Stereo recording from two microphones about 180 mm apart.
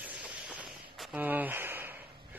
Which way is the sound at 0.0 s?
5° right (ahead or behind).